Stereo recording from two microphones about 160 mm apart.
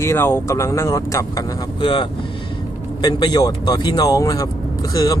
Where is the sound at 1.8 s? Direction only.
30° left (ahead or behind).